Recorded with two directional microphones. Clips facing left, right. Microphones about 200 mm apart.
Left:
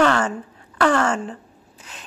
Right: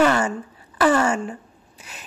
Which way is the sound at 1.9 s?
10° right (ahead or behind).